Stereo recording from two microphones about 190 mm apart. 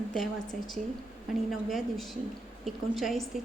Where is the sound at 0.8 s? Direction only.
40° right (ahead or behind).